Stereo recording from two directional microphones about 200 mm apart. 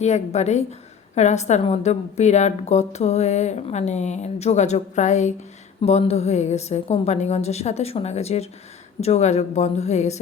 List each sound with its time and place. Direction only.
0.0 s a woman's voice: 35° left (ahead or behind)